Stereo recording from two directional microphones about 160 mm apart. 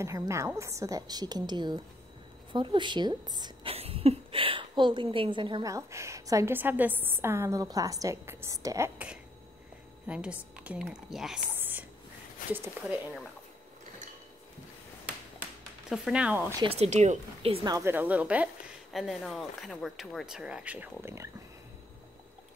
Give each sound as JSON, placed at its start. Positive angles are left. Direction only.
{"t": 0.0, "sound": "a woman's voice", "side_deg": -20}
{"t": 3.7, "sound": "a woman's voice", "side_deg": -40}
{"t": 11.5, "sound": "a sound", "side_deg": -10}
{"t": 12.4, "sound": "a sound", "side_deg": 55}
{"t": 15.9, "sound": "a woman's voice", "side_deg": -5}
{"t": 16.6, "sound": "speech", "side_deg": -40}
{"t": 17.6, "sound": "a woman's voice", "side_deg": -20}